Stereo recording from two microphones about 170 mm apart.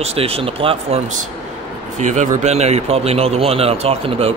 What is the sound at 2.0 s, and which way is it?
Speech, 45° right (ahead or behind).